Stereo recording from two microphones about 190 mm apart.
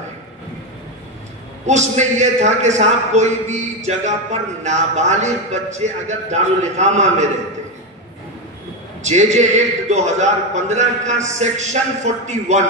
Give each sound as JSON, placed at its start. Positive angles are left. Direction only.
{"t": 1.7, "sound": "a man's voice", "side_deg": -40}
{"t": 9.0, "sound": "a man's voice", "side_deg": -40}